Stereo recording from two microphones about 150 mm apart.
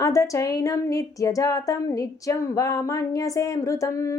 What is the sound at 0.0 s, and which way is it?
Speech, 20° left (ahead or behind).